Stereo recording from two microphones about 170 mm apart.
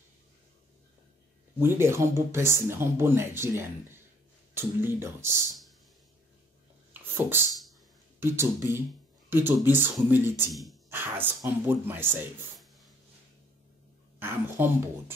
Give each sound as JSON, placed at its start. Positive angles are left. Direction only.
{"t": 1.6, "sound": "speech", "side_deg": -15}
{"t": 6.9, "sound": "a sound", "side_deg": -15}
{"t": 8.2, "sound": "speech", "side_deg": -15}
{"t": 10.5, "sound": "speech", "side_deg": 0}
{"t": 10.9, "sound": "speech", "side_deg": -15}
{"t": 14.2, "sound": "speech", "side_deg": -15}